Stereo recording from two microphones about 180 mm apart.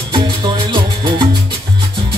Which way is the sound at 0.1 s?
25° right (ahead or behind).